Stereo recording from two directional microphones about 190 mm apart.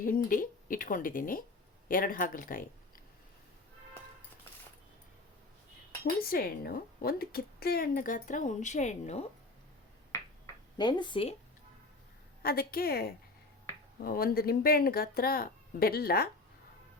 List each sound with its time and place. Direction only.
0.0 s a woman's voice: 50° left (ahead or behind)
6.1 s a woman's voice: 50° left (ahead or behind)
10.1 s finger snapping: 20° left (ahead or behind)
12.4 s a woman's voice: 55° left (ahead or behind)